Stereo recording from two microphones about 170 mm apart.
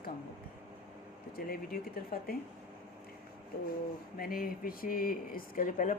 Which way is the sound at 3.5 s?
60° left (ahead or behind).